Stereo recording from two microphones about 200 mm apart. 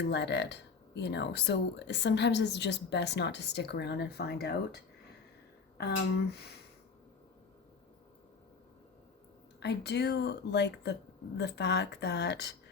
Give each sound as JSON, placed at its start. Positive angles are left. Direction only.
{"t": 0.0, "sound": "speech", "side_deg": 60}
{"t": 9.6, "sound": "speech", "side_deg": 55}